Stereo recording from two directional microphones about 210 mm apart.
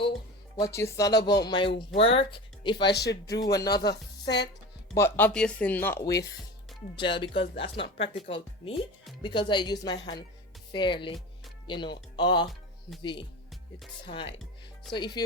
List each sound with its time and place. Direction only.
0.6 s speech: 15° left (ahead or behind)
2.9 s speech: 50° left (ahead or behind)
4.9 s speech: 10° left (ahead or behind)